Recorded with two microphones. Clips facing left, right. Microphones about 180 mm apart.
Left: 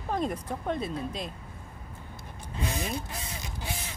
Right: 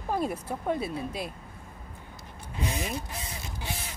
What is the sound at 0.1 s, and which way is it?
Speech, 5° right (ahead or behind).